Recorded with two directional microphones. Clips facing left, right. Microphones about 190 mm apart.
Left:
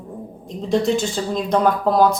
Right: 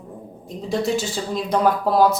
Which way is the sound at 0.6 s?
Centre (ahead or behind).